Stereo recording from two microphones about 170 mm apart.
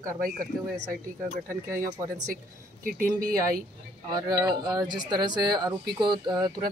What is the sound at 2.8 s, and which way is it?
Speech, 55° right (ahead or behind).